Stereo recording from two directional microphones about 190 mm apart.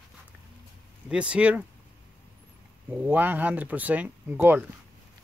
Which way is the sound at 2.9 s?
10° right (ahead or behind).